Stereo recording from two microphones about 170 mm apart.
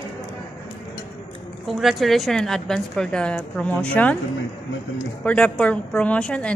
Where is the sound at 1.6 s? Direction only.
Centre (ahead or behind).